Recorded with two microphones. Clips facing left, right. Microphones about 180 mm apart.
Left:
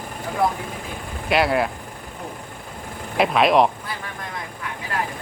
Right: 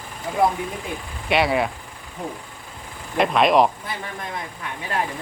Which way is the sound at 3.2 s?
Centre (ahead or behind).